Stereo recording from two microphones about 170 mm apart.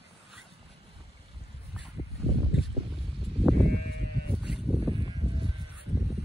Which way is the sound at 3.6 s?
70° right (ahead or behind).